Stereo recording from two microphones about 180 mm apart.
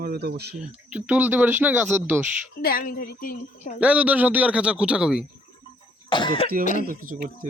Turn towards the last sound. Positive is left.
turn(degrees=-50)  # may be behind; listen again after turning